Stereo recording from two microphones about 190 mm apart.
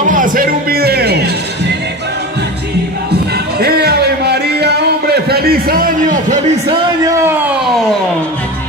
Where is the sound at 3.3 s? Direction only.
55° right (ahead or behind).